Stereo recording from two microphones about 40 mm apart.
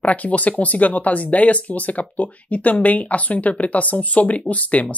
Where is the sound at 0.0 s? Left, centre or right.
Left.